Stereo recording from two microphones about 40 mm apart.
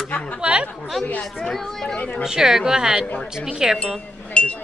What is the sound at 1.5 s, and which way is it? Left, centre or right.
Speech, centre.